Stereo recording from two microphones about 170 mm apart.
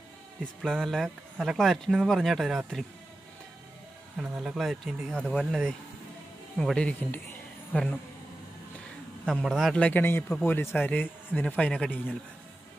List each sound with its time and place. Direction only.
0.4 s speech: 5° left (ahead or behind)
4.2 s a man's voice: 5° right (ahead or behind)
9.2 s a man's voice: centre (ahead or behind)